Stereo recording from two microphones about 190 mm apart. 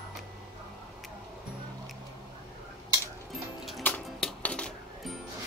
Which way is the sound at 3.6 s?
5° left (ahead or behind).